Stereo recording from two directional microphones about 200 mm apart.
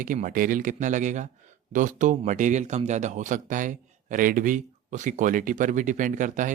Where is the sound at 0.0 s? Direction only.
40° right (ahead or behind).